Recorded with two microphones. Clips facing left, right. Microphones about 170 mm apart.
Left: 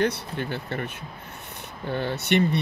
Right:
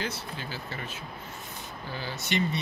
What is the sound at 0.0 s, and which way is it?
Speech, 60° left (ahead or behind).